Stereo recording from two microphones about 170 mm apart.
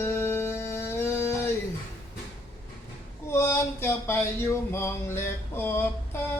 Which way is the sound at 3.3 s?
15° left (ahead or behind).